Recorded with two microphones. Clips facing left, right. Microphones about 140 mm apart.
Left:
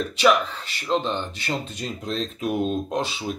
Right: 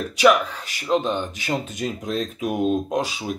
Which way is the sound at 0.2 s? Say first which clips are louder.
Right 3 dB; 10° right (ahead or behind).